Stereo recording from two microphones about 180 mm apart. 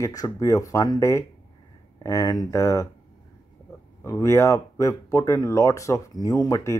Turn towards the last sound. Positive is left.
turn(degrees=20)  # may be behind; listen again after turning